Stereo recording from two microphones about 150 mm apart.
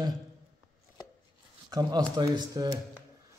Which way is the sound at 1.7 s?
25° right (ahead or behind).